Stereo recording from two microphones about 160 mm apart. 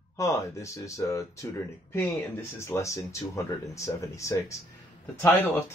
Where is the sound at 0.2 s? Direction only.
20° left (ahead or behind).